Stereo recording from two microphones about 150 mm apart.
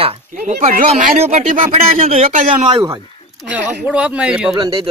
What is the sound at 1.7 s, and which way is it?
A man's voice, 45° right (ahead or behind).